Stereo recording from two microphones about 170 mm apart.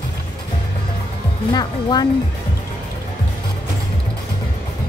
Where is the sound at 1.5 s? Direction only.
25° left (ahead or behind).